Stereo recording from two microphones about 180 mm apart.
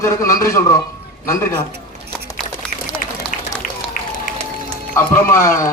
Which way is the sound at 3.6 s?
50° left (ahead or behind).